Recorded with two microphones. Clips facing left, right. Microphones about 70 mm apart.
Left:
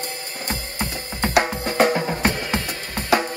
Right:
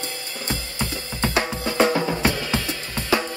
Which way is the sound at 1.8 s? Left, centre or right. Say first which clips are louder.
Even; centre.